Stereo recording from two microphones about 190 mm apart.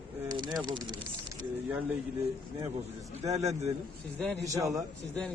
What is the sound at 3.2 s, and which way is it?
Speech, 35° right (ahead or behind).